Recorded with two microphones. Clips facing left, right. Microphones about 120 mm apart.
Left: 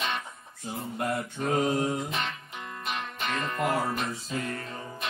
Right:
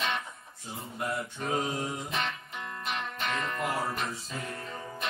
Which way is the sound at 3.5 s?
60° left (ahead or behind).